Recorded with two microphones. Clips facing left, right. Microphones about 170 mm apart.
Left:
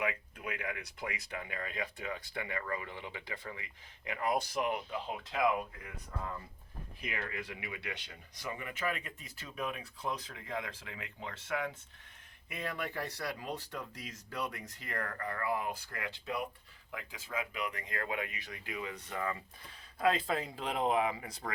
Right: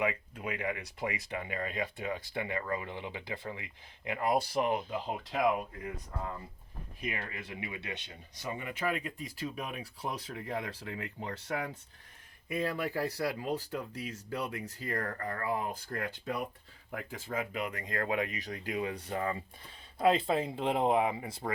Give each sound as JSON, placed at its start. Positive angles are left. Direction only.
{"t": 0.0, "sound": "speech", "side_deg": -30}
{"t": 4.7, "sound": "speech", "side_deg": -45}
{"t": 7.2, "sound": "speech", "side_deg": -30}